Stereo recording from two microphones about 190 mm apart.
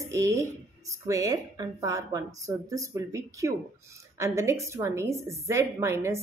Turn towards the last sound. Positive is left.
turn(degrees=-15)  # may be behind; listen again after turning